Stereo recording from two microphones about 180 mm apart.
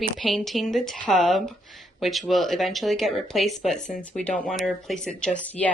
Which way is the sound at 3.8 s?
40° left (ahead or behind).